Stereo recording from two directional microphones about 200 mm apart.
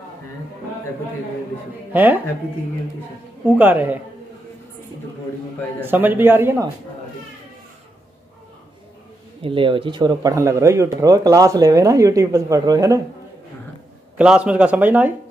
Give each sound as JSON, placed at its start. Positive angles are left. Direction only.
{"t": 1.9, "sound": "speech", "side_deg": -10}
{"t": 3.5, "sound": "speech", "side_deg": -10}
{"t": 5.8, "sound": "speech", "side_deg": -10}
{"t": 9.4, "sound": "a man's voice", "side_deg": -25}
{"t": 14.1, "sound": "speech", "side_deg": -5}